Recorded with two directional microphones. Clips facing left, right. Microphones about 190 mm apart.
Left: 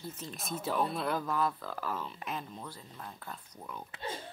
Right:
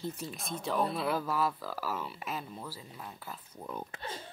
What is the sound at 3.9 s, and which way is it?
Speech, 45° right (ahead or behind).